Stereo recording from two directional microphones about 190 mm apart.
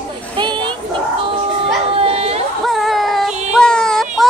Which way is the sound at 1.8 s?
30° right (ahead or behind).